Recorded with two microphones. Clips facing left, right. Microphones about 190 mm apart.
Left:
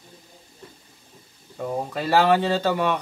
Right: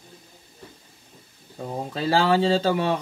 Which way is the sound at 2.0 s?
30° right (ahead or behind).